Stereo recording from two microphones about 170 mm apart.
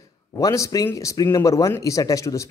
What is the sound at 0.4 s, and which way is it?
Speech, 20° left (ahead or behind).